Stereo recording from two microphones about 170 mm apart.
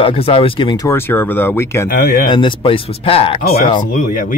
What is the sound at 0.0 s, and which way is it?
Speech, 35° left (ahead or behind).